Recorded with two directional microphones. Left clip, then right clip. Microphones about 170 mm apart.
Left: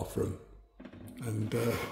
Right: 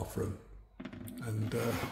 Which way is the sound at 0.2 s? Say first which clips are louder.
Left 4 dB; 30° left (ahead or behind).